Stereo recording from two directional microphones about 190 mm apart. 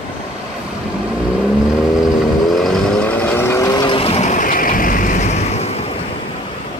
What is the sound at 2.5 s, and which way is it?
Vehicle, centre (ahead or behind).